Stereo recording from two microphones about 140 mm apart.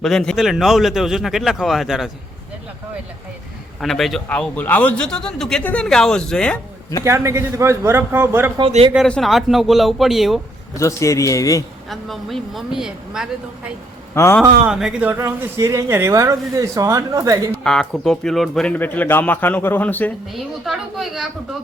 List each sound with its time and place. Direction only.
0.0 s a man's voice: 5° left (ahead or behind)
3.8 s a man's voice: centre (ahead or behind)
7.0 s speech: 20° right (ahead or behind)
9.0 s a man's voice: 5° left (ahead or behind)
10.8 s a man's voice: 20° left (ahead or behind)
11.9 s a man's voice: centre (ahead or behind)
14.2 s speech: 15° left (ahead or behind)
14.7 s speech: 5° right (ahead or behind); by 17.5 s 25° right (ahead or behind)
17.6 s speech: 5° left (ahead or behind)
20.3 s a man's voice: centre (ahead or behind)